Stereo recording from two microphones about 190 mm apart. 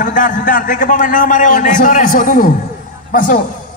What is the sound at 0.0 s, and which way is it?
A man's voice, 45° left (ahead or behind).